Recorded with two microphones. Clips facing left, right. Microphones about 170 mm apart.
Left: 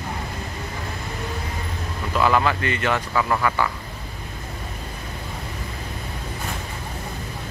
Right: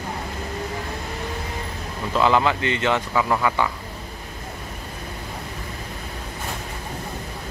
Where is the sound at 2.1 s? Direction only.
20° right (ahead or behind).